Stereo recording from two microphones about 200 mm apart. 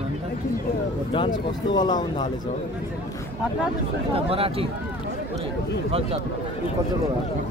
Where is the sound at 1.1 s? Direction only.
20° left (ahead or behind).